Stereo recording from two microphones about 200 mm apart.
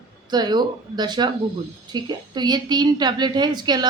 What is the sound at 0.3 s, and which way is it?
A woman's voice, 20° right (ahead or behind).